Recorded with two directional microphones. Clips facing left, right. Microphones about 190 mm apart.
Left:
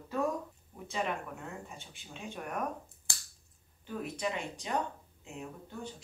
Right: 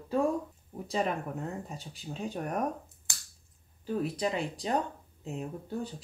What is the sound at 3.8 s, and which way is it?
Speech, 35° right (ahead or behind).